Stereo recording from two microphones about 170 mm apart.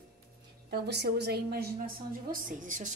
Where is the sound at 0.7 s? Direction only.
75° right (ahead or behind).